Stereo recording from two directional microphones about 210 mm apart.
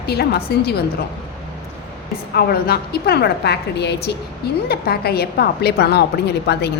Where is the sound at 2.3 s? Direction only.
50° left (ahead or behind).